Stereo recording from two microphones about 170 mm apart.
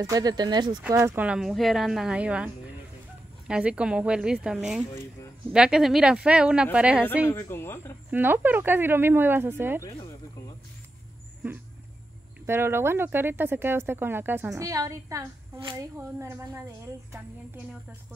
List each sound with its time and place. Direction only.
0.0 s speech: 20° right (ahead or behind)
0.8 s speech: 15° right (ahead or behind)
7.3 s speech: 15° left (ahead or behind)
8.1 s speech: 10° right (ahead or behind)
12.4 s speech: 15° right (ahead or behind)